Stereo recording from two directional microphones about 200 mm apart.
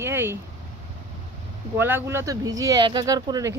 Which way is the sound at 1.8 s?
10° right (ahead or behind).